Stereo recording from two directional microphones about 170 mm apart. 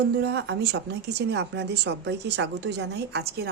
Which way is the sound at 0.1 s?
80° right.